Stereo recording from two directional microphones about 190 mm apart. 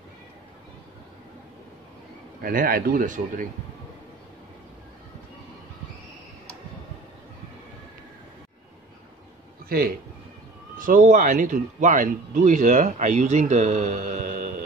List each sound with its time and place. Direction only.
2.4 s speech: 50° right (ahead or behind)
9.7 s a man's voice: 50° right (ahead or behind)